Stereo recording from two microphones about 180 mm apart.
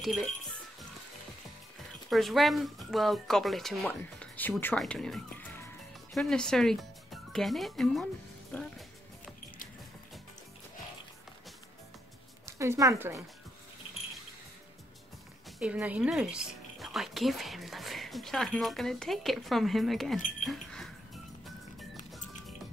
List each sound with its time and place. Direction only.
0.0 s speech: centre (ahead or behind)
2.0 s speech: centre (ahead or behind)
12.4 s a woman's voice: 15° right (ahead or behind)
15.6 s speech: 5° right (ahead or behind)
20.2 s speech: 45° left (ahead or behind)
20.4 s a sound: centre (ahead or behind)
21.9 s music: centre (ahead or behind)